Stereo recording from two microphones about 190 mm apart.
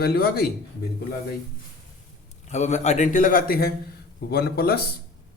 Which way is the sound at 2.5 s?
35° left (ahead or behind).